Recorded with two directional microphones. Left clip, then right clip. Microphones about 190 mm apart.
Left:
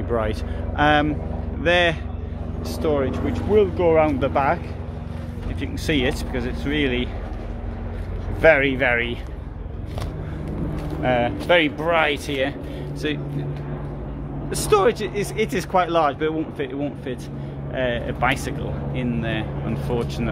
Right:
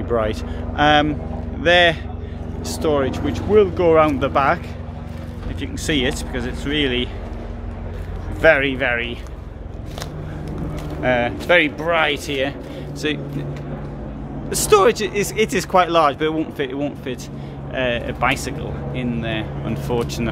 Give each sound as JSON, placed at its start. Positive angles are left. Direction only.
{"t": 0.1, "sound": "speech", "side_deg": -10}
{"t": 5.6, "sound": "speech", "side_deg": 0}
{"t": 8.4, "sound": "speech", "side_deg": 5}
{"t": 11.0, "sound": "speech", "side_deg": 0}
{"t": 14.5, "sound": "speech", "side_deg": -15}
{"t": 19.7, "sound": "speech", "side_deg": -15}